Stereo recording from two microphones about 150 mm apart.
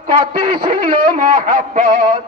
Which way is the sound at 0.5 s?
75° right (ahead or behind).